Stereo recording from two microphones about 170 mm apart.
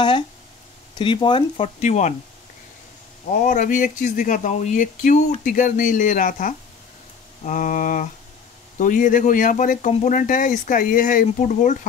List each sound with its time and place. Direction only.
0.9 s speech: 30° left (ahead or behind)
1.6 s speech: 40° left (ahead or behind)
3.3 s speech: 50° left (ahead or behind)